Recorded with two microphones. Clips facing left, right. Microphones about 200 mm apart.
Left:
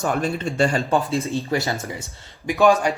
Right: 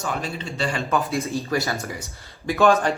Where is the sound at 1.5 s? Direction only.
20° left (ahead or behind).